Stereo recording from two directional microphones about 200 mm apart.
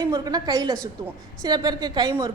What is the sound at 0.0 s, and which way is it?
A woman's voice, 20° right (ahead or behind).